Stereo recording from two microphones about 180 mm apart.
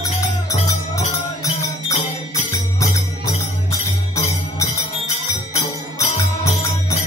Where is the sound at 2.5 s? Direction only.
15° left (ahead or behind).